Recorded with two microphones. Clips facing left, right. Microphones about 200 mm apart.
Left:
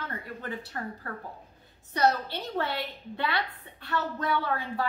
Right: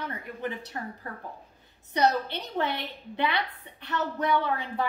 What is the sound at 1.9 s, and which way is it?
A woman's voice, 20° right (ahead or behind).